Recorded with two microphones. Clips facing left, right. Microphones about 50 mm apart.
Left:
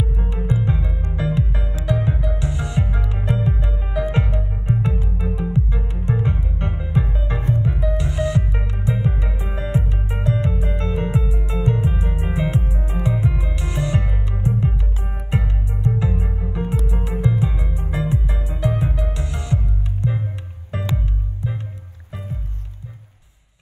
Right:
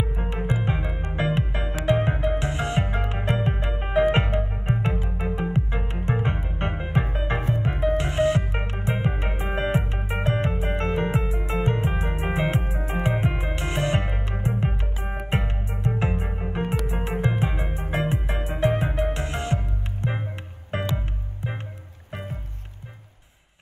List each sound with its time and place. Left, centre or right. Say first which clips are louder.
0.1 s music: left 3 dB; right